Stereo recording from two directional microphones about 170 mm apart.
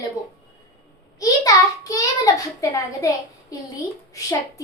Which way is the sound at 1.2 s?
20° left (ahead or behind).